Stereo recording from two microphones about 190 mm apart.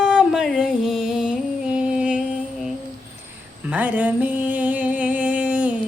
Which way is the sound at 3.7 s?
10° right (ahead or behind).